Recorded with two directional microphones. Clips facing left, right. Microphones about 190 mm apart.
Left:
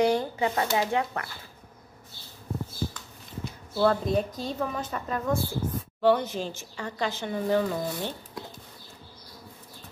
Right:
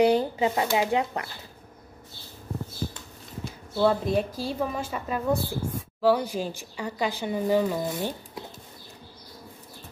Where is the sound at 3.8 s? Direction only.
5° right (ahead or behind).